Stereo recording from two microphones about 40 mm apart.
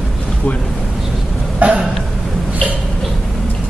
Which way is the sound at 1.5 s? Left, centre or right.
Right.